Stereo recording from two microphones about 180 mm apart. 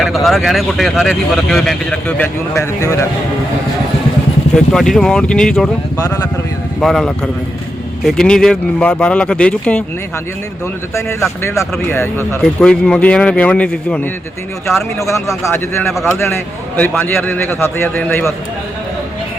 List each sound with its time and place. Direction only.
0.0 s speech: centre (ahead or behind)
4.5 s speech: 5° left (ahead or behind)
6.0 s speech: 20° left (ahead or behind)
6.7 s speech: centre (ahead or behind)
10.9 s a man's voice: 15° left (ahead or behind)
15.4 s a man's voice: 15° left (ahead or behind)
15.9 s speech: centre (ahead or behind)
16.1 s a man's voice: 15° left (ahead or behind)